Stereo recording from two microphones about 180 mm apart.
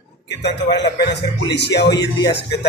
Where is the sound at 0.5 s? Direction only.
75° left (ahead or behind).